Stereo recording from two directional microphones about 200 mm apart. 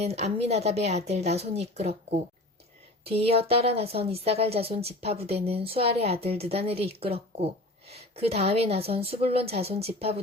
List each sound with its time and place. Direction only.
0.0 s a woman's voice: 35° right (ahead or behind)
3.1 s a woman's voice: 30° right (ahead or behind)